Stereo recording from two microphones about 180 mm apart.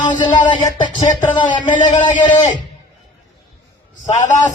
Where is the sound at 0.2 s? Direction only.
25° left (ahead or behind).